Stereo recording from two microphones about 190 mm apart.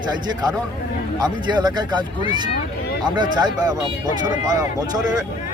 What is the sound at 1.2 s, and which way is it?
Speech, 20° right (ahead or behind).